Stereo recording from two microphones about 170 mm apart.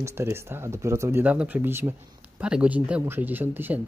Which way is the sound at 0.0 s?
15° right (ahead or behind).